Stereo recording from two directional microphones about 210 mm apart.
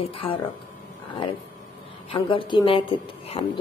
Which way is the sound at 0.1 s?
25° left (ahead or behind).